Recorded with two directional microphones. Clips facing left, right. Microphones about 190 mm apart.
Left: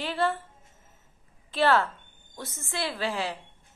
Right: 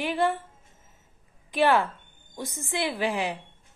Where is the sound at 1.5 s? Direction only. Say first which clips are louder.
Right 1 dB; 15° right (ahead or behind).